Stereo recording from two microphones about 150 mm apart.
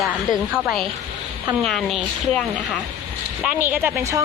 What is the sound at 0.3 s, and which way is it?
Speech, centre (ahead or behind).